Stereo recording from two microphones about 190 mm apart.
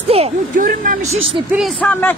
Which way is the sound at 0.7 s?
45° right (ahead or behind).